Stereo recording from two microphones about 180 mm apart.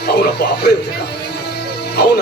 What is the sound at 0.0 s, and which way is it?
Speech, 65° left (ahead or behind).